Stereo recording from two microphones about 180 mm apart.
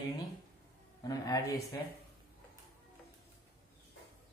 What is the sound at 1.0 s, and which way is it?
Speech, 20° left (ahead or behind).